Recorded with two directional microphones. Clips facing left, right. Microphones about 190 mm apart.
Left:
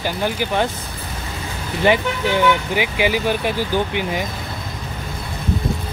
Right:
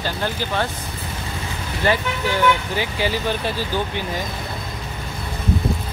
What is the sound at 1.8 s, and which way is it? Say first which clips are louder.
Speech: left 4 dB; 15° left (ahead or behind).